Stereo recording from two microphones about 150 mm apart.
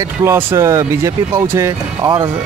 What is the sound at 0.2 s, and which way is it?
Speech, 20° right (ahead or behind).